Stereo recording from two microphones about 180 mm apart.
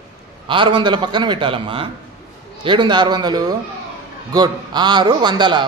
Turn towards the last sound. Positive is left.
turn(degrees=-25)  # may be behind; listen again after turning